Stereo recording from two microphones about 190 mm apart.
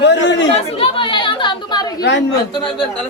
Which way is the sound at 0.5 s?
30° left (ahead or behind).